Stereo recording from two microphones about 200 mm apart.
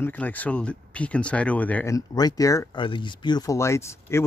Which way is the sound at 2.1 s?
20° left (ahead or behind).